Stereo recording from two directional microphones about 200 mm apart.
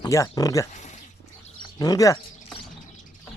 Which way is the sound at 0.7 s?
35° left (ahead or behind).